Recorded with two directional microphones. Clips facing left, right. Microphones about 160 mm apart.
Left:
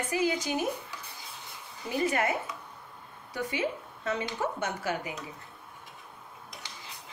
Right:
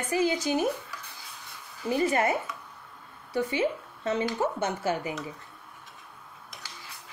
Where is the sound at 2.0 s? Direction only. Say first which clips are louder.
Right 2 dB; 30° right (ahead or behind).